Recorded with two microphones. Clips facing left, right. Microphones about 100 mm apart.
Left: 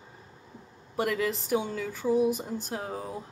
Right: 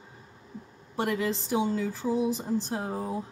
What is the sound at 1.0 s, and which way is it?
Speech, 30° right (ahead or behind).